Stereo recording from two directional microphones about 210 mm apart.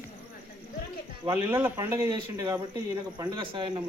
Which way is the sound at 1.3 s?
10° right (ahead or behind).